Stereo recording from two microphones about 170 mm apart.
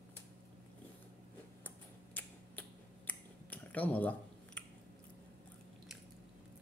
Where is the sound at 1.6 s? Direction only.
10° left (ahead or behind).